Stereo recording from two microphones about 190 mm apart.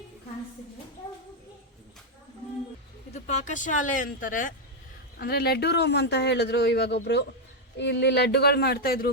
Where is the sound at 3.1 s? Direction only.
40° left (ahead or behind).